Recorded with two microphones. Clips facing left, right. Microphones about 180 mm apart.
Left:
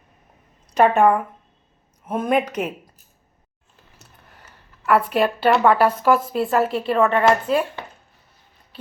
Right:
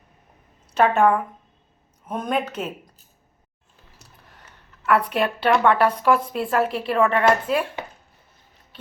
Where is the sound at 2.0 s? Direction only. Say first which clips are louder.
Left 4 dB; 5° left (ahead or behind).